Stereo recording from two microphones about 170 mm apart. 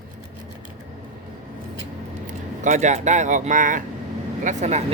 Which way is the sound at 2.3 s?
45° right (ahead or behind).